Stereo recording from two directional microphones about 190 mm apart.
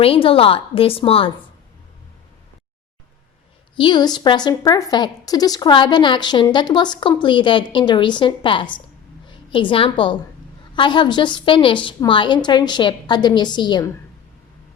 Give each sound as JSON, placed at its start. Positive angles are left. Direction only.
{"t": 0.0, "sound": "a woman's voice", "side_deg": 30}
{"t": 3.8, "sound": "a woman's voice", "side_deg": 25}